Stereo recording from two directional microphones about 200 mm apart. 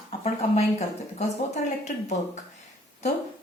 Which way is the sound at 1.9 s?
40° left (ahead or behind).